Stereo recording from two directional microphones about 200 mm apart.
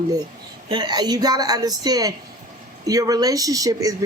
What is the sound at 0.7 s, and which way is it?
A woman's voice, 20° right (ahead or behind).